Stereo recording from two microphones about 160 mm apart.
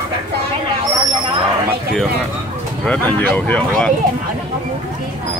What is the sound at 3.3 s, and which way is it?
Speech, 5° left (ahead or behind).